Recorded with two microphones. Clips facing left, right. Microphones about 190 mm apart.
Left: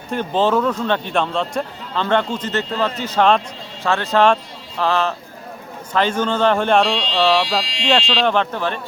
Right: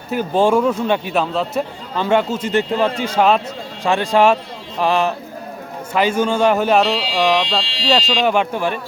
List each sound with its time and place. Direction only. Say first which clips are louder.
0.1 s speech: right 2 dB; 10° right (ahead or behind)
7.6 s speech: even; 30° right (ahead or behind)
7.9 s speech: right 1 dB; 5° right (ahead or behind)